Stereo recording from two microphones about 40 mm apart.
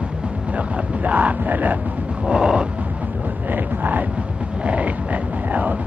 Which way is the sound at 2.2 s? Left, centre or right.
Right.